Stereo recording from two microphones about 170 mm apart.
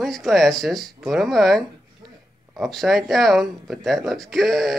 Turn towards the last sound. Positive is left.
turn(degrees=0)  # may be behind; listen again after turning